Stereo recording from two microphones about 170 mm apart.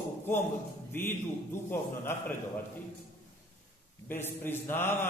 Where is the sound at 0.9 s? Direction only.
15° left (ahead or behind).